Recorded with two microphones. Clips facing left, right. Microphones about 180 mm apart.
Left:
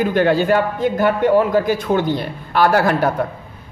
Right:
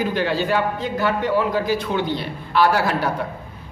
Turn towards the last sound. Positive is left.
turn(degrees=50)  # may be behind; listen again after turning